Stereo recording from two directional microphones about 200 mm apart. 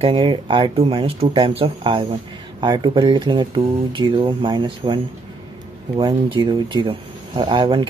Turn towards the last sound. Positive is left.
turn(degrees=-25)  # may be behind; listen again after turning